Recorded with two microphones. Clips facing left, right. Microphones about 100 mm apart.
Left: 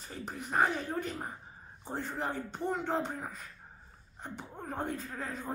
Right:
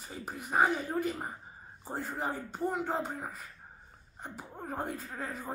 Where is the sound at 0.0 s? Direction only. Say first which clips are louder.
Even; 5° right (ahead or behind).